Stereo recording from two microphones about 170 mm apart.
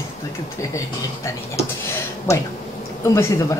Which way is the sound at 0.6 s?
20° left (ahead or behind).